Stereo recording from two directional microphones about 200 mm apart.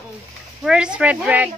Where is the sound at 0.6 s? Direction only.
5° right (ahead or behind).